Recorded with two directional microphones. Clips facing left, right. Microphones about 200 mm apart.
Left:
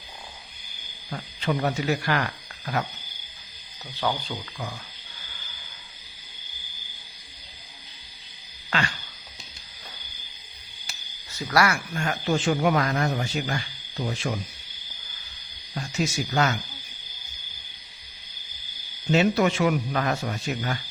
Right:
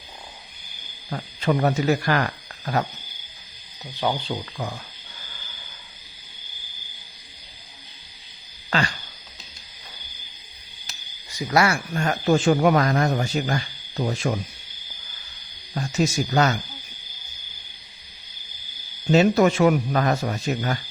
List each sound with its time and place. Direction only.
1.5 s a man's voice: 45° right (ahead or behind)
3.9 s speech: 20° right (ahead or behind)
4.3 s speech: 40° right (ahead or behind)
8.7 s a sound: 35° right (ahead or behind)
11.3 s speech: 15° right (ahead or behind)
11.9 s a man's voice: 45° right (ahead or behind)
15.7 s speech: 40° right (ahead or behind)
19.1 s speech: 40° right (ahead or behind)